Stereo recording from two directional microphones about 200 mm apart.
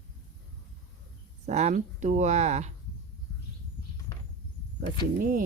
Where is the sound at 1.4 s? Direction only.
35° right (ahead or behind).